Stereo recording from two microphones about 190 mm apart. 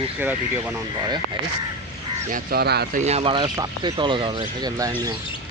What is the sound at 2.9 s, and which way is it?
Speech, 35° right (ahead or behind).